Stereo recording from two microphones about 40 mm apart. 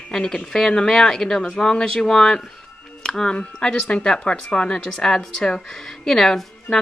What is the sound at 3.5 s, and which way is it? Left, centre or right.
A woman's voice, centre.